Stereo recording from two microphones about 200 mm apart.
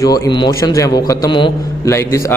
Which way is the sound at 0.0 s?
20° left (ahead or behind).